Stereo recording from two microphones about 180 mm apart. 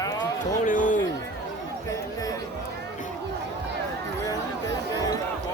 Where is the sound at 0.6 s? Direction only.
45° left (ahead or behind).